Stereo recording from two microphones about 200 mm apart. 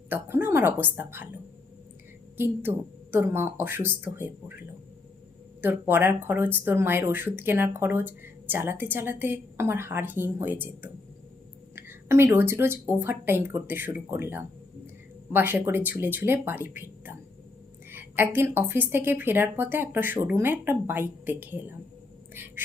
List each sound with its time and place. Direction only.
0.1 s speech: 10° right (ahead or behind)
2.4 s speech: 10° right (ahead or behind)
5.6 s speech: 10° right (ahead or behind)
11.7 s speech: 10° right (ahead or behind)
17.9 s speech: 10° right (ahead or behind)